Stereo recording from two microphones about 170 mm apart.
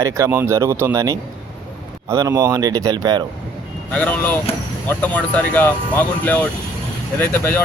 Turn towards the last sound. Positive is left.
turn(degrees=10)  # may be behind; listen again after turning